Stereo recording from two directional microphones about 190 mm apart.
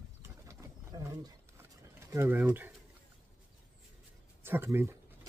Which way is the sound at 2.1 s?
10° right (ahead or behind).